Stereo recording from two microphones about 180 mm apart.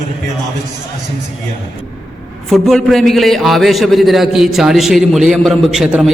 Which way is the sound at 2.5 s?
Centre (ahead or behind).